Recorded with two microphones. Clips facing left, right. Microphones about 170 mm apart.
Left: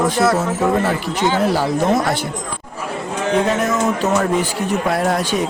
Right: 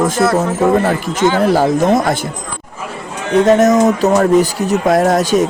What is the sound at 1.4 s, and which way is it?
Speech, 45° right (ahead or behind).